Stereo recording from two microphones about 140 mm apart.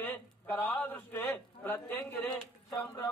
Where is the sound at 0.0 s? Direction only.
15° left (ahead or behind).